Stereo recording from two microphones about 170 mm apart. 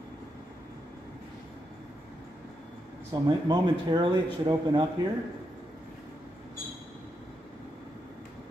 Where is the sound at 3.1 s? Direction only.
25° right (ahead or behind).